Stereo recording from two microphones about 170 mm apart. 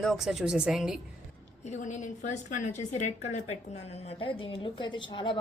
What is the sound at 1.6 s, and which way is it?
A woman's voice, 45° left (ahead or behind).